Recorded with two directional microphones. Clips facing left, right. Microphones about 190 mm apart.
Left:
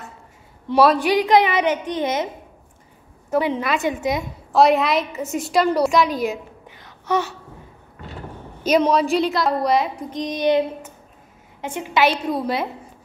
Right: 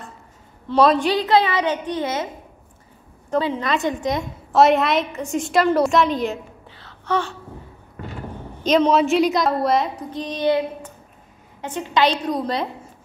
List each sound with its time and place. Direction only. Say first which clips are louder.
0.7 s a woman's voice: even; 5° left (ahead or behind)
3.3 s a woman's voice: left 1 dB; 15° left (ahead or behind)
3.7 s a woman's voice: even; 5° left (ahead or behind)
6.7 s babbling: left 1 dB; 15° left (ahead or behind)
8.6 s a woman's voice: even; 10° left (ahead or behind)
9.2 s a woman's voice: right 2 dB; 20° right (ahead or behind)
9.5 s a woman's voice: even; centre (ahead or behind)
10.0 s a woman's voice: left 1 dB; 15° left (ahead or behind)